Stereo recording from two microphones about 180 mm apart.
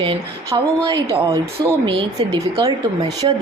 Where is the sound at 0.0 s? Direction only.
25° right (ahead or behind).